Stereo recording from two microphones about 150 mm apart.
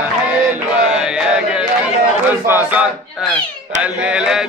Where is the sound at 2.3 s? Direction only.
15° right (ahead or behind).